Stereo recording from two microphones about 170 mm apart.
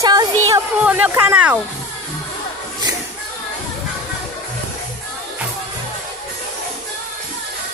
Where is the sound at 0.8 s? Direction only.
10° right (ahead or behind).